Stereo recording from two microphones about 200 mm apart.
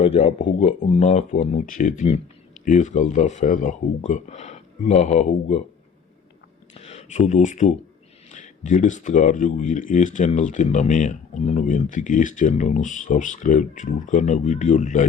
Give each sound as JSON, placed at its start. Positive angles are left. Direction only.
{"t": 0.0, "sound": "speech", "side_deg": 30}
{"t": 6.8, "sound": "speech", "side_deg": 35}